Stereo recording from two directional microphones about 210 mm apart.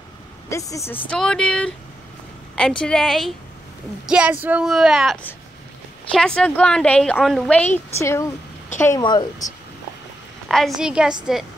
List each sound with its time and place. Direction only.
0.5 s speech: 15° left (ahead or behind)
2.8 s a woman's voice: 5° left (ahead or behind); by 9.5 s 20° left (ahead or behind)
10.5 s speech: centre (ahead or behind)